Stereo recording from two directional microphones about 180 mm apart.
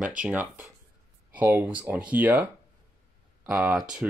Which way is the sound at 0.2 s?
10° right (ahead or behind).